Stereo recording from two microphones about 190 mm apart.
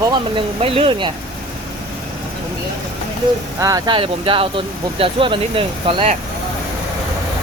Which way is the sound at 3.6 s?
20° right (ahead or behind).